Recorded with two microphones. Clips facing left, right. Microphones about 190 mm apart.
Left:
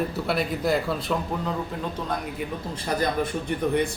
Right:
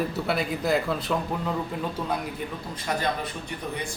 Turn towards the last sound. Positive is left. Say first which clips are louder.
# left 9 dB
turn(degrees=55)  # may be behind; listen again after turning